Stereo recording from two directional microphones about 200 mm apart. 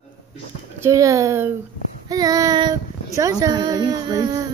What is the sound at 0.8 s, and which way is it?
Speech, 15° right (ahead or behind).